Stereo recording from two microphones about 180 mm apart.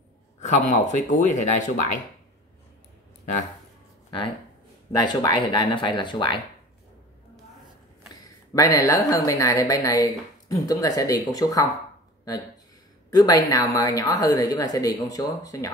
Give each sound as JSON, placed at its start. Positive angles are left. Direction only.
{"t": 0.4, "sound": "speech", "side_deg": 40}
{"t": 4.9, "sound": "a woman's voice", "side_deg": 25}
{"t": 8.1, "sound": "a woman's voice", "side_deg": 20}
{"t": 13.1, "sound": "a woman's voice", "side_deg": 20}